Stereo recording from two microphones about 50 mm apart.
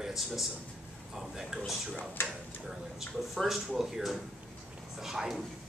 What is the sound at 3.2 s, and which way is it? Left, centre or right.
A man's voice, centre.